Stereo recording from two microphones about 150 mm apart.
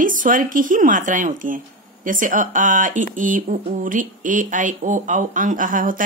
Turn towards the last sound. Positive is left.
turn(degrees=-65)  # may be behind; listen again after turning